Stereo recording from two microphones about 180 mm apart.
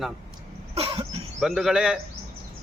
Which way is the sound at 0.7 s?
30° right (ahead or behind).